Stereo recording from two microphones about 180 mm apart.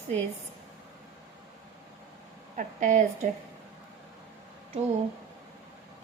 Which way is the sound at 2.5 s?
45° right (ahead or behind).